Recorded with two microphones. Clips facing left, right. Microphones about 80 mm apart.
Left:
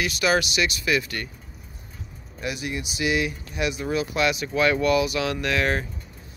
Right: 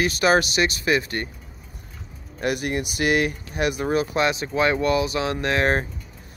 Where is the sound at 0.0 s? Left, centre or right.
Right.